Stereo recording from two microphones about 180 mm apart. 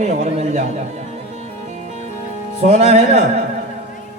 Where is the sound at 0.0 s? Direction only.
40° right (ahead or behind).